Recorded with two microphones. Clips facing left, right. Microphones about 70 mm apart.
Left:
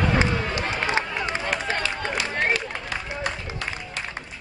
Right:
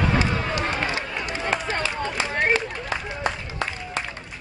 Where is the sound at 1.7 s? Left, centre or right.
Right.